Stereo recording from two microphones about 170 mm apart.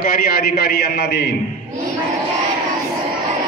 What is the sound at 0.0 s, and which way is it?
A man's voice, 60° left (ahead or behind).